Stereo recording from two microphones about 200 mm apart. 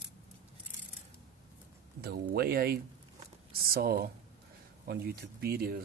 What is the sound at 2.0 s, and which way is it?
Speech, 50° right (ahead or behind).